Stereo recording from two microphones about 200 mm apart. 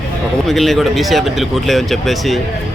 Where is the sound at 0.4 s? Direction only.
Centre (ahead or behind).